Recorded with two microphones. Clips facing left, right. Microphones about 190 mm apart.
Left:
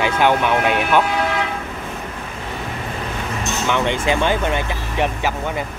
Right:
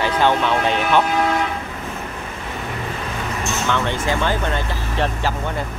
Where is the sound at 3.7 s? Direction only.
15° left (ahead or behind).